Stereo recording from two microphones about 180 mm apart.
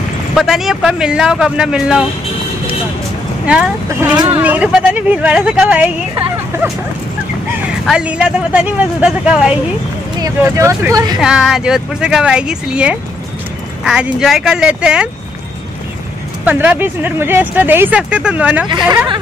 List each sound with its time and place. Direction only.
0.3 s speech: centre (ahead or behind)
3.4 s speech: 5° right (ahead or behind)
7.8 s speech: 5° right (ahead or behind)
10.4 s speech: 15° right (ahead or behind)
11.1 s speech: 5° right (ahead or behind)
16.4 s speech: 10° right (ahead or behind)
18.7 s speech: 25° right (ahead or behind)